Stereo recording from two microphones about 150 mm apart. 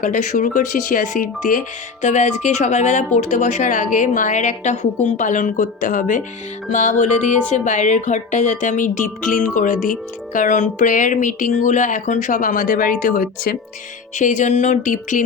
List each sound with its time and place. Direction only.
0.0 s speech: 55° left (ahead or behind)
5.0 s music: 55° left (ahead or behind)
14.2 s speech: 55° left (ahead or behind)